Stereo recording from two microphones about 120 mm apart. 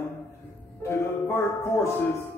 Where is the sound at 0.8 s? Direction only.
20° left (ahead or behind).